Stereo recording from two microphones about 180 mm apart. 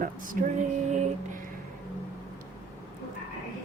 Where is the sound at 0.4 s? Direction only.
50° right (ahead or behind).